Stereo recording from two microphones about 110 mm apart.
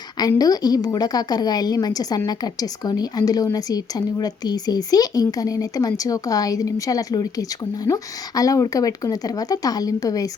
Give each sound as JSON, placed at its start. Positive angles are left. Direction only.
{"t": 0.2, "sound": "a woman's voice", "side_deg": 35}